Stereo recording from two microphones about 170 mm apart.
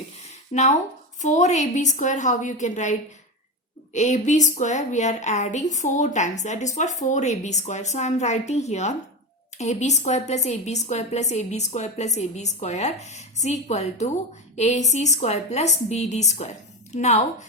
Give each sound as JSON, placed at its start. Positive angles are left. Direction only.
{"t": 0.5, "sound": "a woman's voice", "side_deg": 45}
{"t": 3.9, "sound": "a woman's voice", "side_deg": 45}